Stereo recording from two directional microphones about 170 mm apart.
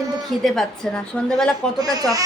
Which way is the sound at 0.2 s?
Centre (ahead or behind).